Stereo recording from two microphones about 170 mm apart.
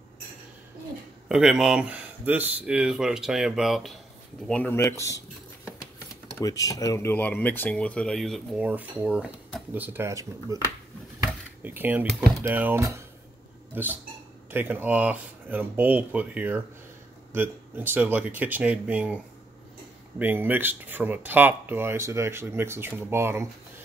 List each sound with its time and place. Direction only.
1.3 s speech: 5° right (ahead or behind); by 5.2 s 20° left (ahead or behind)
6.4 s speech: 20° left (ahead or behind); by 8.6 s centre (ahead or behind)
8.6 s speech: 10° right (ahead or behind)
11.6 s speech: 10° right (ahead or behind)
20.2 s speech: 10° right (ahead or behind)